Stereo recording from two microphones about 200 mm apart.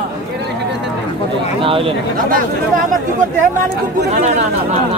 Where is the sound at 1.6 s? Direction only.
25° right (ahead or behind).